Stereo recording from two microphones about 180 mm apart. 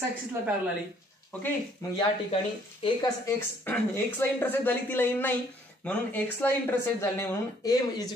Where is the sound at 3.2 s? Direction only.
10° left (ahead or behind).